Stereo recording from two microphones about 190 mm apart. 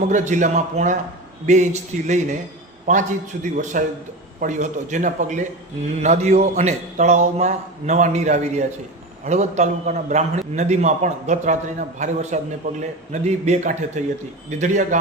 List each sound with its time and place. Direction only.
0.1 s a man's voice: 40° right (ahead or behind)